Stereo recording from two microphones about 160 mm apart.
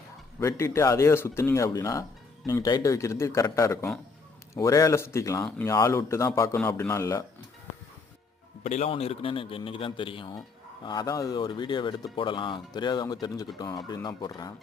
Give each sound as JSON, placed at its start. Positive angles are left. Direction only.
{"t": 0.3, "sound": "a man's voice", "side_deg": 15}
{"t": 8.6, "sound": "a man's voice", "side_deg": 45}